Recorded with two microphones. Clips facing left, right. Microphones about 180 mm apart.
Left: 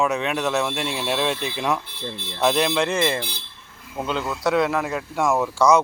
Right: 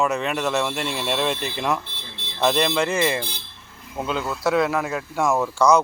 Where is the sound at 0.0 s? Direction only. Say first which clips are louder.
Even; centre (ahead or behind).